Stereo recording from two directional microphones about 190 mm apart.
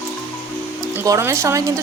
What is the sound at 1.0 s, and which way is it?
Speech, 15° right (ahead or behind).